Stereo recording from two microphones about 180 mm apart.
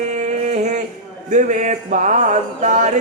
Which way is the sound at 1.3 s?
45° right (ahead or behind).